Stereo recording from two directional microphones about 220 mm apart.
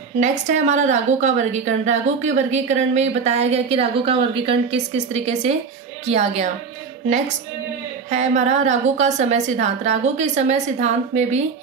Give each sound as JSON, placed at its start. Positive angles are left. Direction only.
{"t": 0.2, "sound": "a woman's voice", "side_deg": -35}
{"t": 8.1, "sound": "a woman's voice", "side_deg": -30}